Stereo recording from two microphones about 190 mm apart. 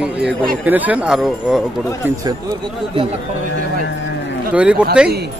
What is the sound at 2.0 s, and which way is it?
Speech, 20° right (ahead or behind).